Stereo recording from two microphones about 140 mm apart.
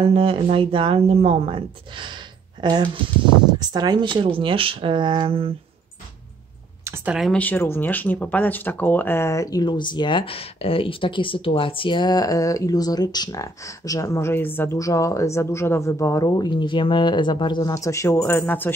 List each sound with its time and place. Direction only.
0.0 s speech: 40° right (ahead or behind)
7.1 s speech: centre (ahead or behind)
7.3 s speech: 10° left (ahead or behind)